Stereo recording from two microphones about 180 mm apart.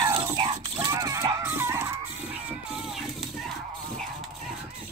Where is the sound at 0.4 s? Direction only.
30° right (ahead or behind).